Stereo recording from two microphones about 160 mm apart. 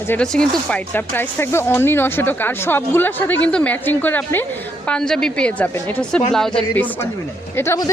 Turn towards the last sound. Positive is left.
turn(degrees=20)  # may be behind; listen again after turning